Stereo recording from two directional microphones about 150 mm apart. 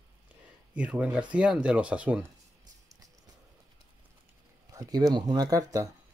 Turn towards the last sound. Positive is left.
turn(degrees=-20)  # may be behind; listen again after turning